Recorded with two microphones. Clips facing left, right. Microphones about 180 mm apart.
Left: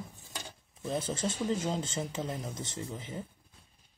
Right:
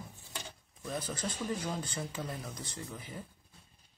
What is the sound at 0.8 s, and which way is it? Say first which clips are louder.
Speech: left 5 dB; 25° left (ahead or behind).